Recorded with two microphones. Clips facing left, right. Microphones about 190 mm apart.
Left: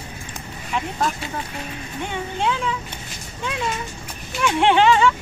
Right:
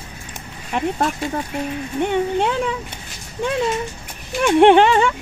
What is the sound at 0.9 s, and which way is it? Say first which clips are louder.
Speech: right 3 dB; 40° right (ahead or behind).